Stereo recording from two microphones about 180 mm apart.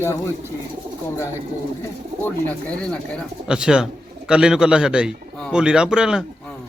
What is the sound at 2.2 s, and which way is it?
A man's voice, 5° left (ahead or behind).